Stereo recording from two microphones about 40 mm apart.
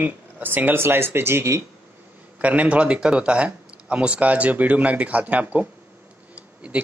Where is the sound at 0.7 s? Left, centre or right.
Right.